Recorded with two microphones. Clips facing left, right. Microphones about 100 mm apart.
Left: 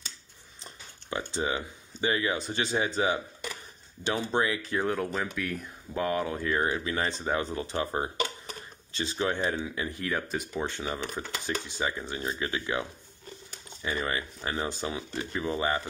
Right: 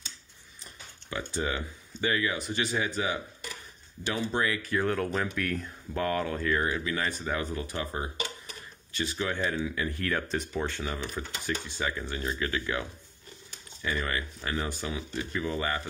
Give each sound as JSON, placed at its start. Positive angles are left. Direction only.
{"t": 1.1, "sound": "speech", "side_deg": 20}
{"t": 4.9, "sound": "speech", "side_deg": 5}
{"t": 10.6, "sound": "speech", "side_deg": 20}
{"t": 13.8, "sound": "speech", "side_deg": 25}